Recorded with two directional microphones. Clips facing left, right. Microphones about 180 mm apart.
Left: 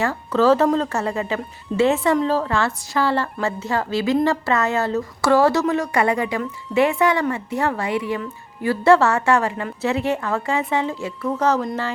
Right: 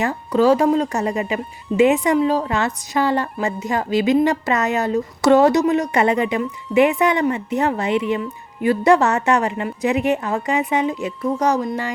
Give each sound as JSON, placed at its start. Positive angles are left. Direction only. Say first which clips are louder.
{"t": 0.0, "sound": "a woman's voice", "louder": "right 1 dB", "side_deg": -15}